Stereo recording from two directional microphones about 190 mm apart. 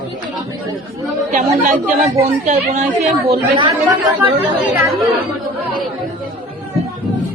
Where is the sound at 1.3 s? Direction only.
40° right (ahead or behind); by 4.1 s 25° right (ahead or behind).